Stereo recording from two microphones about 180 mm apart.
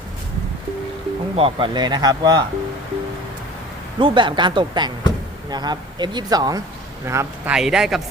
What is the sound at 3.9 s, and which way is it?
Speech, 25° right (ahead or behind).